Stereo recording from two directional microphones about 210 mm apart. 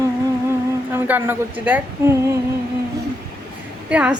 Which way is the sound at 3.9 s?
5° right (ahead or behind).